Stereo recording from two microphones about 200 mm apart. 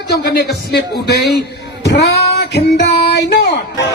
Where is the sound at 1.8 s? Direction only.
60° left (ahead or behind).